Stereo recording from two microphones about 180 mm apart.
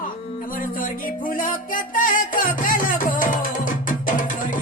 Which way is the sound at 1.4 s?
50° left (ahead or behind).